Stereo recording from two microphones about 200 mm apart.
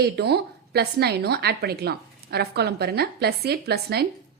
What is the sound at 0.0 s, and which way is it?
A woman's voice, 55° right (ahead or behind).